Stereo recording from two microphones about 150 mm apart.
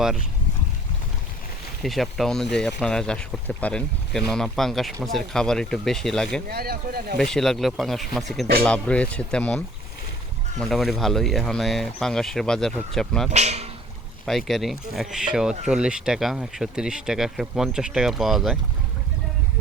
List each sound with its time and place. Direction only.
1.8 s speech: centre (ahead or behind)
6.5 s speech: 90° right
7.2 s speech: centre (ahead or behind)
13.3 s speech: 50° right (ahead or behind)
14.3 s speech: centre (ahead or behind)